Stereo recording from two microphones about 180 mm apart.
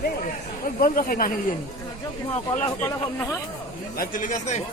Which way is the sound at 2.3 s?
35° left (ahead or behind).